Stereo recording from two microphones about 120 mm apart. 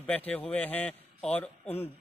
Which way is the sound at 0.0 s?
15° left (ahead or behind).